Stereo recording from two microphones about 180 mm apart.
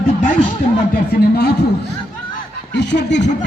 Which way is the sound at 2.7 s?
75° left (ahead or behind).